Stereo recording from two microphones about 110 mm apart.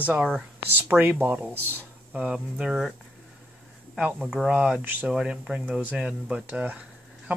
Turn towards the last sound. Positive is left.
turn(degrees=-10)  # may be behind; listen again after turning